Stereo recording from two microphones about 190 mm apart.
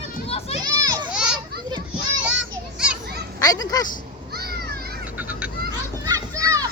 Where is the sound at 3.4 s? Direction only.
20° left (ahead or behind).